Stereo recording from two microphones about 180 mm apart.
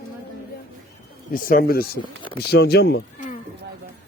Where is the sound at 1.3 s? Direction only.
50° left (ahead or behind).